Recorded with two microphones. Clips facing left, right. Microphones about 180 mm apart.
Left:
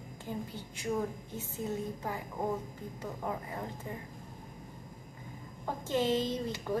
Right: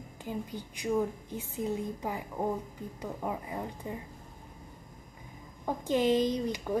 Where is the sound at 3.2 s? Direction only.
15° right (ahead or behind).